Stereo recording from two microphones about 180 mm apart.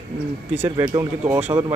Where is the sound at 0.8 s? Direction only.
15° right (ahead or behind).